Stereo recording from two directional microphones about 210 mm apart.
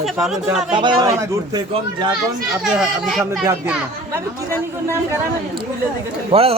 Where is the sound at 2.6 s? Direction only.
Centre (ahead or behind).